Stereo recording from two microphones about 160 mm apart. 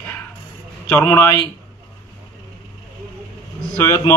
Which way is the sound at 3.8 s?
15° left (ahead or behind).